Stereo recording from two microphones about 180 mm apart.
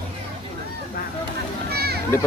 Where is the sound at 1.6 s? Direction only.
60° right (ahead or behind).